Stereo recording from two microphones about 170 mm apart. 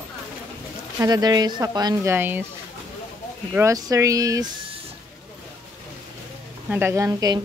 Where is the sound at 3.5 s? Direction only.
20° right (ahead or behind).